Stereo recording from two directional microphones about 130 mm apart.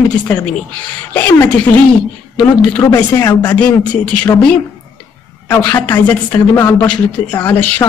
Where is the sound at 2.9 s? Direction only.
30° left (ahead or behind).